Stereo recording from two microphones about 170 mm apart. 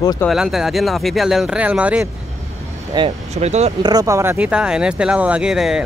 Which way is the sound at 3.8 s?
25° right (ahead or behind).